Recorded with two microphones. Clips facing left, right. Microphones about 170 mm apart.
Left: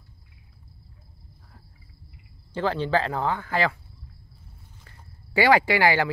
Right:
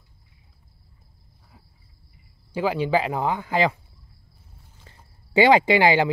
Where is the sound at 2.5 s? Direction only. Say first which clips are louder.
Right 2 dB; 10° right (ahead or behind).